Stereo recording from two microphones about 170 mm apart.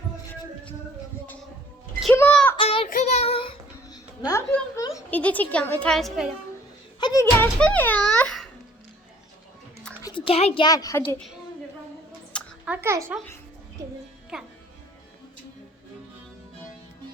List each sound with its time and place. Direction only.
2.1 s a sound: 10° left (ahead or behind)
2.6 s child singing: 35° left (ahead or behind)
3.8 s a sound: 20° left (ahead or behind)
5.2 s speech: 10° left (ahead or behind)
7.0 s speech: 20° left (ahead or behind)
7.6 s a sound: 10° left (ahead or behind)
10.0 s a child's voice: 30° left (ahead or behind)
12.6 s a child's voice: 10° right (ahead or behind)
14.3 s speech: 5° right (ahead or behind)